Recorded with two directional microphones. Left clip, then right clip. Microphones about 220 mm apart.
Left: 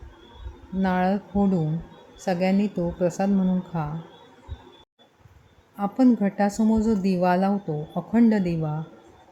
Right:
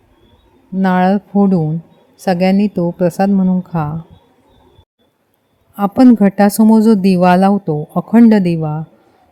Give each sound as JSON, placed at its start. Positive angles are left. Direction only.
{"t": 0.8, "sound": "a woman's voice", "side_deg": -40}
{"t": 5.7, "sound": "speech", "side_deg": -45}